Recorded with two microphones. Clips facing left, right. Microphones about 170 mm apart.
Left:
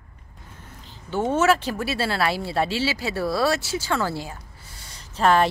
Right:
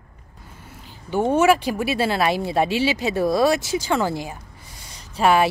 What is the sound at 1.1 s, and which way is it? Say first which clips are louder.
Speech: right 3 dB; 15° right (ahead or behind).